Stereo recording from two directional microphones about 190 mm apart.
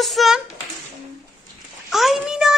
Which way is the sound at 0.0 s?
Centre (ahead or behind).